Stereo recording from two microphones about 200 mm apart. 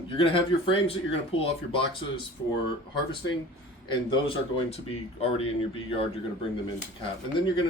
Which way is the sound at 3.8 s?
25° left (ahead or behind).